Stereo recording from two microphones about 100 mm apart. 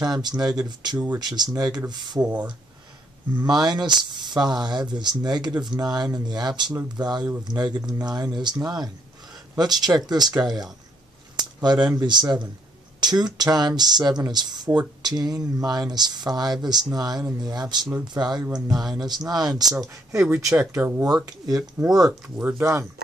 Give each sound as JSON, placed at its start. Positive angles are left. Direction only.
{"t": 0.0, "sound": "speech", "side_deg": -45}
{"t": 0.9, "sound": "speech", "side_deg": -20}
{"t": 1.2, "sound": "speech", "side_deg": -45}
{"t": 3.3, "sound": "speech", "side_deg": -45}
{"t": 20.2, "sound": "speech", "side_deg": -20}
{"t": 21.0, "sound": "speech", "side_deg": -40}
{"t": 22.4, "sound": "speech", "side_deg": -25}